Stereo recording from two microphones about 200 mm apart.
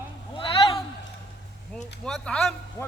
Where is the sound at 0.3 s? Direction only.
25° left (ahead or behind).